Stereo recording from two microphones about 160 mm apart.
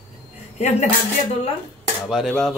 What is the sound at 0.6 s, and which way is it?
Speech, 45° left (ahead or behind).